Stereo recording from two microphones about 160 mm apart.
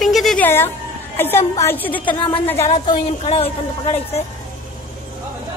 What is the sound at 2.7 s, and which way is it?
A woman's voice, 35° left (ahead or behind).